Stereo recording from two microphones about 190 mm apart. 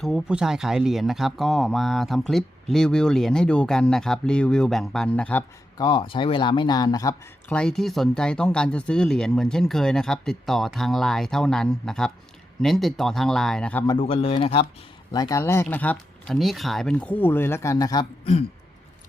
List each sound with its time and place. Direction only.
0.0 s speech: centre (ahead or behind)
5.7 s speech: 25° left (ahead or behind)
7.5 s speech: 5° left (ahead or behind)
13.8 s speech: 25° left (ahead or behind)
15.1 s speech: 20° left (ahead or behind)